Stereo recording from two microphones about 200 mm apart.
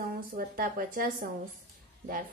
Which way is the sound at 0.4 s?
45° right (ahead or behind).